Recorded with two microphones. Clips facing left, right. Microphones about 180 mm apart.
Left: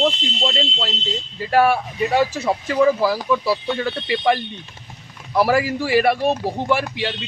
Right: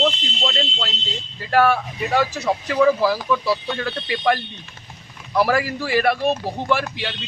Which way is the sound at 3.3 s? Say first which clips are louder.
Left 2 dB; 5° left (ahead or behind).